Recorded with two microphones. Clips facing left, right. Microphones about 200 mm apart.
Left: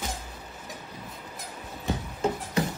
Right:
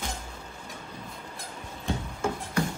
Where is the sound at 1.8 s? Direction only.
20° left (ahead or behind).